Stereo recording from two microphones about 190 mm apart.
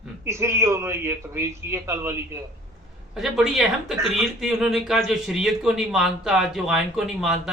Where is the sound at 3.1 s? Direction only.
Centre (ahead or behind).